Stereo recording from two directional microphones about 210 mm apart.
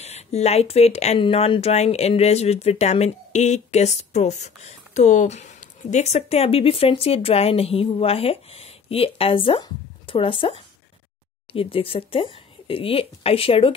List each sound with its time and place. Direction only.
0.0 s speech: 30° left (ahead or behind)